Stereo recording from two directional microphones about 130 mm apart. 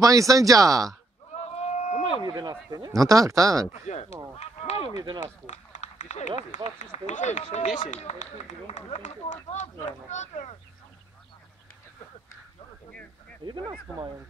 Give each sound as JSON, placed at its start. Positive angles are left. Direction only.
{"t": 0.0, "sound": "speech", "side_deg": -25}
{"t": 1.3, "sound": "run", "side_deg": 55}
{"t": 2.2, "sound": "speech", "side_deg": -30}
{"t": 3.7, "sound": "speech", "side_deg": 60}
{"t": 4.4, "sound": "a sound", "side_deg": 50}
{"t": 4.9, "sound": "speech", "side_deg": -35}
{"t": 5.2, "sound": "speech", "side_deg": 65}